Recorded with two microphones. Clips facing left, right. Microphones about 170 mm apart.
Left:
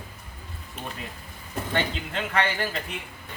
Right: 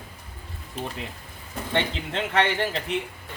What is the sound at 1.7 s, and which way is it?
Speech, 25° right (ahead or behind).